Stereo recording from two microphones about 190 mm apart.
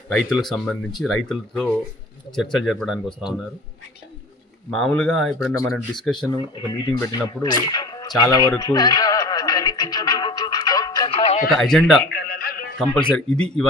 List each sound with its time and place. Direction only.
0.1 s speech: centre (ahead or behind)
4.7 s speech: 5° left (ahead or behind)
6.1 s speech: 20° left (ahead or behind)
7.7 s music: 20° left (ahead or behind)
11.2 s radio: 35° left (ahead or behind)
11.6 s speech: 5° left (ahead or behind)
12.0 s music: 55° left (ahead or behind)
12.9 s speech: 5° left (ahead or behind)